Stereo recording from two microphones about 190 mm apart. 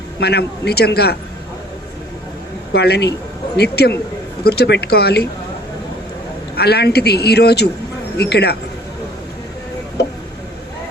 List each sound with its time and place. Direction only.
0.2 s a man's voice: 60° left (ahead or behind)
2.7 s a man's voice: 60° left (ahead or behind)
6.6 s a man's voice: 60° left (ahead or behind)
10.0 s a sound: 60° left (ahead or behind)